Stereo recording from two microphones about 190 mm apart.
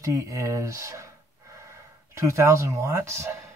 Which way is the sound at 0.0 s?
15° right (ahead or behind).